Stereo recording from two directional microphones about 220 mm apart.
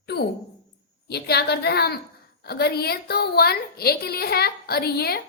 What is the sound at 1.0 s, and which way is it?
A woman's voice, 50° left (ahead or behind).